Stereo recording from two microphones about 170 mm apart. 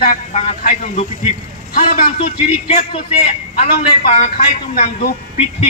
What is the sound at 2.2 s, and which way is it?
A man's voice, 35° left (ahead or behind).